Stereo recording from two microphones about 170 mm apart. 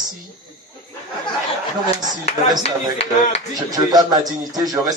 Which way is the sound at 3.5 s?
20° right (ahead or behind).